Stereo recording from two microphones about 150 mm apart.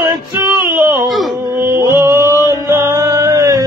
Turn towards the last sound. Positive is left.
turn(degrees=-20)  # may be behind; listen again after turning